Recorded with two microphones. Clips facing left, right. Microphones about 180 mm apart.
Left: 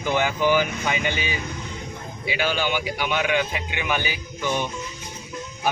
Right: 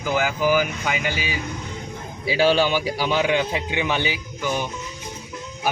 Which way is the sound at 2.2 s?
35° right (ahead or behind).